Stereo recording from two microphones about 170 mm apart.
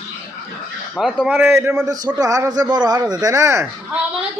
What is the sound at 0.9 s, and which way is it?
Speech, 5° right (ahead or behind).